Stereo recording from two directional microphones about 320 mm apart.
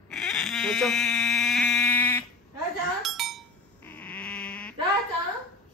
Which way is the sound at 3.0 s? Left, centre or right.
Centre.